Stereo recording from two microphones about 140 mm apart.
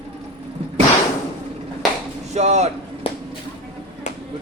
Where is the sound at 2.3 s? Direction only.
55° right (ahead or behind).